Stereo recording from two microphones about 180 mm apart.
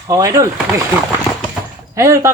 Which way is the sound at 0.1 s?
15° right (ahead or behind).